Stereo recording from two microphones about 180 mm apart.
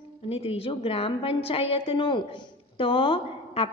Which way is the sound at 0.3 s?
30° left (ahead or behind).